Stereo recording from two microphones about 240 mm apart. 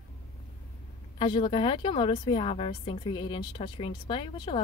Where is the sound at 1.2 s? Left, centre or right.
Left.